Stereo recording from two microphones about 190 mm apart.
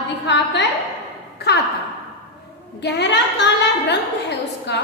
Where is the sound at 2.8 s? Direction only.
65° left (ahead or behind).